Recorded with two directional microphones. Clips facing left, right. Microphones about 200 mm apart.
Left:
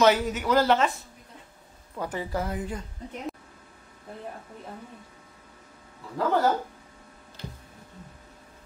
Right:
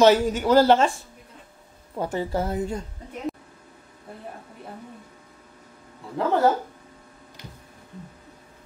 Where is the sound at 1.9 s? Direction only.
25° right (ahead or behind).